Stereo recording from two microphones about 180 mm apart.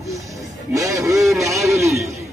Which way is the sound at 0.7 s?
15° right (ahead or behind).